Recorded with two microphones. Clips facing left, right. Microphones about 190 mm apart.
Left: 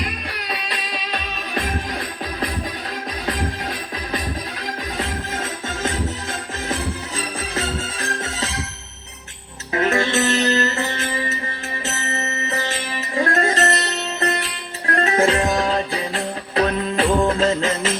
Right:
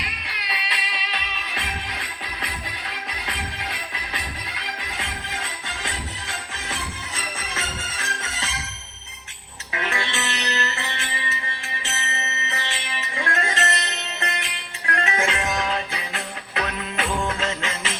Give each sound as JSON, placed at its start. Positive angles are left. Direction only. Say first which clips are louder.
{"t": 0.0, "sound": "music", "louder": "left 8 dB", "side_deg": 45}
{"t": 9.7, "sound": "music", "louder": "left 10 dB", "side_deg": 40}